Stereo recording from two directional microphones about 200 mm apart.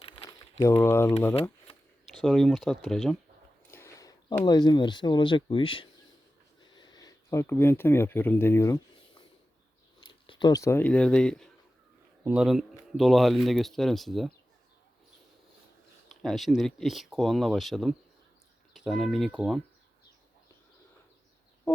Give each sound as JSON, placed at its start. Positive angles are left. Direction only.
{"t": 0.2, "sound": "crumpling", "side_deg": 20}
{"t": 0.6, "sound": "speech", "side_deg": 10}
{"t": 2.1, "sound": "speech", "side_deg": 0}
{"t": 3.7, "sound": "speech", "side_deg": 15}
{"t": 6.6, "sound": "a sound", "side_deg": 20}
{"t": 10.2, "sound": "speech", "side_deg": 20}
{"t": 16.0, "sound": "speech", "side_deg": 0}